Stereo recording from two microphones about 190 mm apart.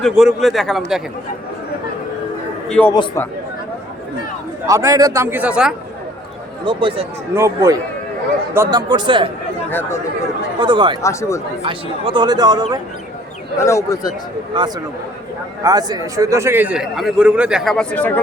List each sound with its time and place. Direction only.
0.0 s a man's voice: centre (ahead or behind)
2.6 s a man's voice: 5° left (ahead or behind)
4.6 s a man's voice: 15° right (ahead or behind)
6.7 s speech: 25° right (ahead or behind)
7.3 s a man's voice: 15° right (ahead or behind)
8.9 s speech: 25° right (ahead or behind)
10.6 s speech: 25° right (ahead or behind)
11.0 s speech: 15° left (ahead or behind)
11.6 s speech: 25° right (ahead or behind)
13.6 s speech: 15° left (ahead or behind)
14.5 s a man's voice: 25° right (ahead or behind); by 18.2 s 10° left (ahead or behind)